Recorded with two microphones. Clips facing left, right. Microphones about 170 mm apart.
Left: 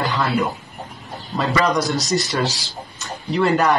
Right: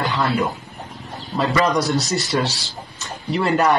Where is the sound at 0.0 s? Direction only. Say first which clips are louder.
Even; centre (ahead or behind).